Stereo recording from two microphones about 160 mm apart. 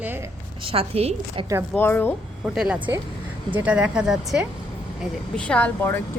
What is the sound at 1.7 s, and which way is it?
Speech, 10° left (ahead or behind).